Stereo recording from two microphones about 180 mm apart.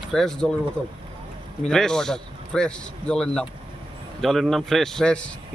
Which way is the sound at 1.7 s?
5° left (ahead or behind).